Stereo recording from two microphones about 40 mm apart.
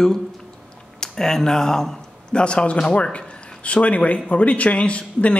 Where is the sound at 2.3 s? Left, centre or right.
Left.